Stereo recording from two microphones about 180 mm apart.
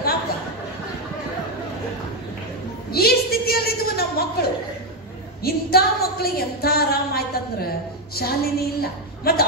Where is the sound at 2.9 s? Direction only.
60° left (ahead or behind).